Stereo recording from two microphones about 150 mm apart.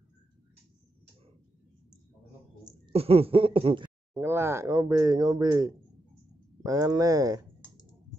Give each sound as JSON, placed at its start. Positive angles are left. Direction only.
{"t": 2.9, "sound": "speech", "side_deg": -40}
{"t": 4.1, "sound": "speech", "side_deg": -15}